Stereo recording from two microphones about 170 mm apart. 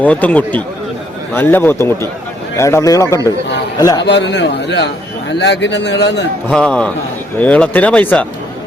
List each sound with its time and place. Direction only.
0.0 s a man's voice: 10° left (ahead or behind)
4.0 s a man's voice: 90° left
6.5 s a man's voice: 5° left (ahead or behind)